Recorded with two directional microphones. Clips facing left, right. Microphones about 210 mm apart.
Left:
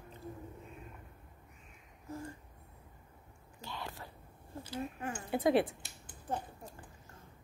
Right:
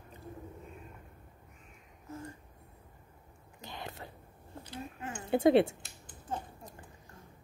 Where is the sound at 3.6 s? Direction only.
20° right (ahead or behind).